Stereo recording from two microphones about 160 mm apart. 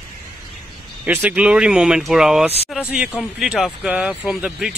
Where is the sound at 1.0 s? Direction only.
10° right (ahead or behind).